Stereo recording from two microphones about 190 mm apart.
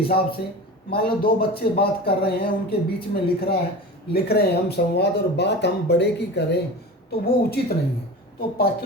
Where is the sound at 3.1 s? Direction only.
55° left (ahead or behind).